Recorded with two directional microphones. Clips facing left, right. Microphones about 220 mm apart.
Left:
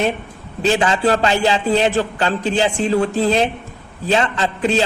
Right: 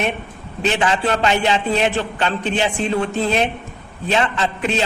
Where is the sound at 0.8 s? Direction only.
35° left (ahead or behind).